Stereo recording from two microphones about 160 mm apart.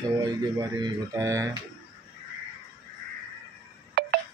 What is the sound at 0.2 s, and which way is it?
Speech, 25° right (ahead or behind).